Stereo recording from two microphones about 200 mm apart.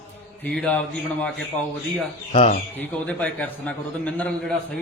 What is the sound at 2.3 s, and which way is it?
Speech, 25° left (ahead or behind).